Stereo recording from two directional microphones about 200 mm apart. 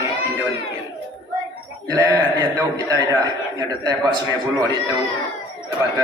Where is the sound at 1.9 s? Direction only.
15° right (ahead or behind).